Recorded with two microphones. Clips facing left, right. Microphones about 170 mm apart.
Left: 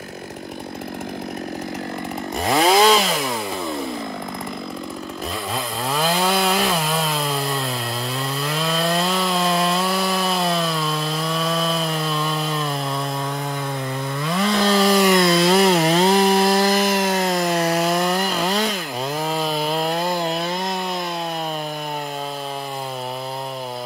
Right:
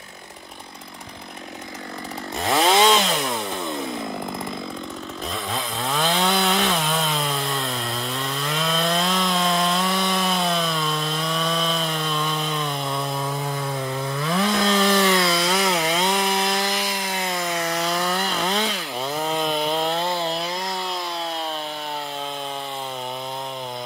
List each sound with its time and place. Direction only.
2.4 s chainsaw: 5° left (ahead or behind)
5.9 s chainsaw: 5° left (ahead or behind)
8.2 s wood: centre (ahead or behind)
15.2 s chainsaw: 55° left (ahead or behind)
15.7 s chainsaw: 35° left (ahead or behind)
17.4 s wood: 65° left (ahead or behind)
18.1 s chainsaw: 5° left (ahead or behind)